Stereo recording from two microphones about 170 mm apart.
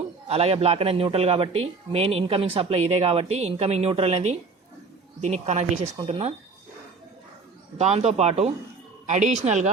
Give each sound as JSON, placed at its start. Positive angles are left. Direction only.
{"t": 0.3, "sound": "speech", "side_deg": -35}
{"t": 7.8, "sound": "speech", "side_deg": -40}